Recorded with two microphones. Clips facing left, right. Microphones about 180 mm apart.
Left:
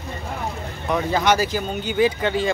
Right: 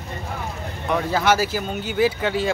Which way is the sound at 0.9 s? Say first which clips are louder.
Even; 5° right (ahead or behind).